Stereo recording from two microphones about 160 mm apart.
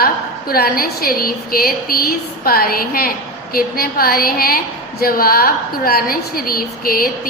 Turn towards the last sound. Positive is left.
turn(degrees=65)  # may be behind; listen again after turning